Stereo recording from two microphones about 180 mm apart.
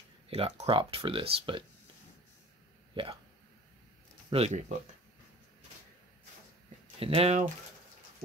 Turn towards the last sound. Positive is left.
turn(degrees=-35)  # may be behind; listen again after turning